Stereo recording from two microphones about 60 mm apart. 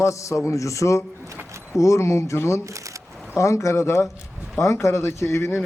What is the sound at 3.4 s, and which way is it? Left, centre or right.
Speech, left.